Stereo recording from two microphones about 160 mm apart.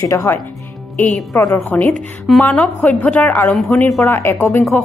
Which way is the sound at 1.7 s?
10° left (ahead or behind).